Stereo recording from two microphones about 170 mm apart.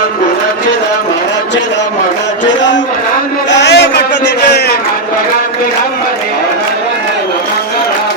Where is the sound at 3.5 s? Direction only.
90° left.